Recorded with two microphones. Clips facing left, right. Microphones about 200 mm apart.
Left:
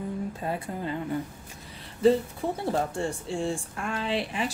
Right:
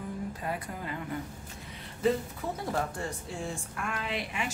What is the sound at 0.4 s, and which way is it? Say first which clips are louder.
Speech: left 4 dB; 25° left (ahead or behind).